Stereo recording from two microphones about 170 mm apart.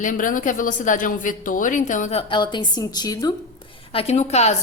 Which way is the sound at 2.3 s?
25° left (ahead or behind).